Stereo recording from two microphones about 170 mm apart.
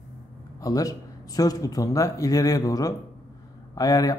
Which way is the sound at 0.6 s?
20° left (ahead or behind).